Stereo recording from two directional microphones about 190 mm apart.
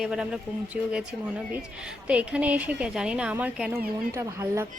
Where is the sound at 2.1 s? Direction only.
5° right (ahead or behind).